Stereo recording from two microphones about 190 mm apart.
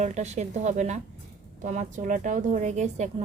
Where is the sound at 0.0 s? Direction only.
35° right (ahead or behind).